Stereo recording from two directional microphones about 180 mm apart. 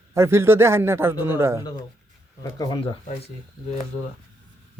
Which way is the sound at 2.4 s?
20° left (ahead or behind).